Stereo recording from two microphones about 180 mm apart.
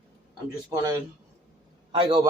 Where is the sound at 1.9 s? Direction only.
30° right (ahead or behind).